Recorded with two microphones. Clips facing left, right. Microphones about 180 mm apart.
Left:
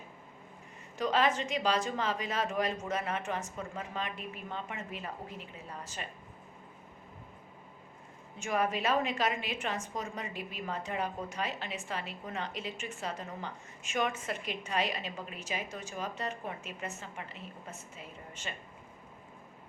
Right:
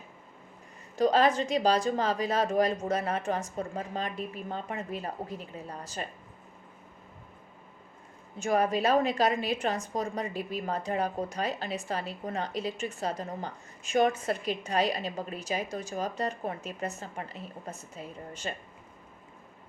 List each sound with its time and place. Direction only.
0.9 s a woman's voice: 35° right (ahead or behind)
8.4 s a woman's voice: 35° right (ahead or behind)